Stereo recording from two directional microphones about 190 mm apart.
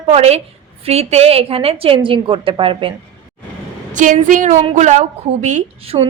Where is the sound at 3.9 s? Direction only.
40° right (ahead or behind).